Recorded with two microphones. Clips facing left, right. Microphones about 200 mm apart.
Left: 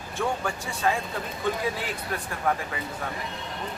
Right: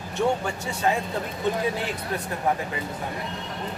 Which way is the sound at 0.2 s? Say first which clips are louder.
Right 4 dB; 20° right (ahead or behind).